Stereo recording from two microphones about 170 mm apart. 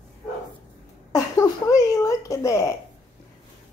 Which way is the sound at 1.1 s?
20° left (ahead or behind).